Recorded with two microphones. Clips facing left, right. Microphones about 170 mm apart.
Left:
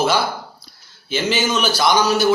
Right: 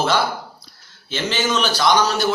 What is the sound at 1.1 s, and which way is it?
Speech, 10° left (ahead or behind).